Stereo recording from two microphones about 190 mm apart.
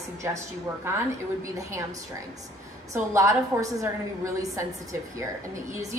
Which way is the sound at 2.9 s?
15° right (ahead or behind).